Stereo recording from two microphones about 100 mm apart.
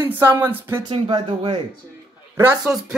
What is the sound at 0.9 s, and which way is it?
Speech, 60° right (ahead or behind).